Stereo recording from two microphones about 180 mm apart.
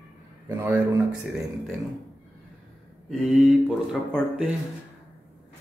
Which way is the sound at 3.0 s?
5° left (ahead or behind).